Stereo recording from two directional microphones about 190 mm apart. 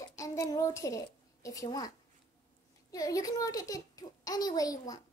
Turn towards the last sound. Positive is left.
turn(degrees=20)  # may be behind; listen again after turning